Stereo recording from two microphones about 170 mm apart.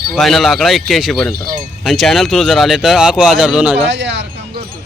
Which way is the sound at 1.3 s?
60° right (ahead or behind).